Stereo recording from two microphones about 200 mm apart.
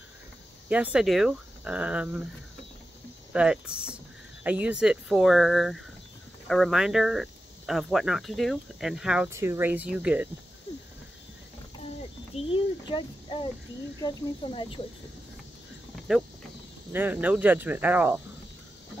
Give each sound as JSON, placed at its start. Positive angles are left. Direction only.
{"t": 0.7, "sound": "speech", "side_deg": -5}
{"t": 3.3, "sound": "speech", "side_deg": -5}
{"t": 12.4, "sound": "a sound", "side_deg": 25}
{"t": 14.0, "sound": "speech", "side_deg": 25}
{"t": 16.9, "sound": "speech", "side_deg": -10}